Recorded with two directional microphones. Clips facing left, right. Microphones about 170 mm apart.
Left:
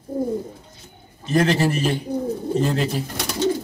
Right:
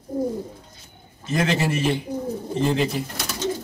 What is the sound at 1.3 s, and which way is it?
Speech, 35° left (ahead or behind).